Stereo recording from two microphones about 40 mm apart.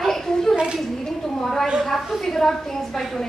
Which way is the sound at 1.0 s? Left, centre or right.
Centre.